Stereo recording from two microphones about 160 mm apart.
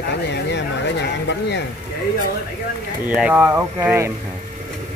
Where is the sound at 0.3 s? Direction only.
90° left.